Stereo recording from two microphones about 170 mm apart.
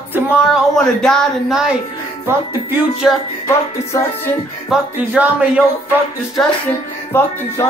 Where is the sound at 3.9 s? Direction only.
20° left (ahead or behind).